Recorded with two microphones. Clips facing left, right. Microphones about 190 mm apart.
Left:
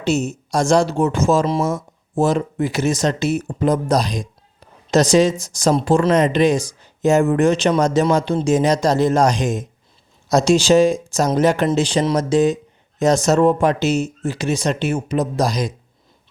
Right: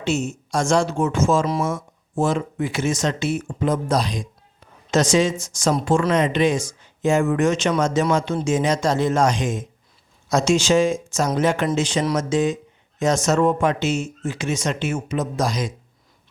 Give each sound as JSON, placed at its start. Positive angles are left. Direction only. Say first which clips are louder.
{"t": 0.0, "sound": "speech", "louder": "left 4 dB", "side_deg": 40}